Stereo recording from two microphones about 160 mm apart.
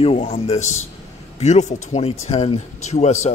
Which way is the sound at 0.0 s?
40° left (ahead or behind).